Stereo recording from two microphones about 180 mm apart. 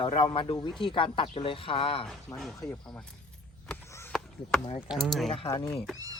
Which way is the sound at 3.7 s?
15° left (ahead or behind).